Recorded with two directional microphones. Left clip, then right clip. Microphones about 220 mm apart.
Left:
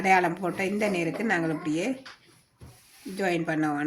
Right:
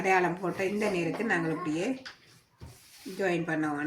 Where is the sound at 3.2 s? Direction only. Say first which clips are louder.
Left 3 dB; 35° left (ahead or behind).